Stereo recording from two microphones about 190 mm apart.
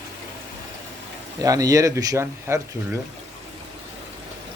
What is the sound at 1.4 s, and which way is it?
Speech, 20° right (ahead or behind).